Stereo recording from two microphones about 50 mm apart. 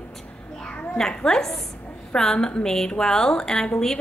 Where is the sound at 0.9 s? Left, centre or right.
Centre.